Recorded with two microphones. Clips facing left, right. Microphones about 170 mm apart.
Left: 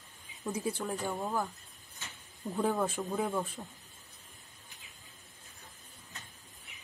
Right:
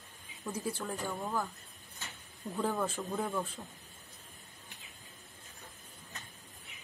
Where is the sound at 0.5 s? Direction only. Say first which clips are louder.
Left 3 dB; 20° left (ahead or behind).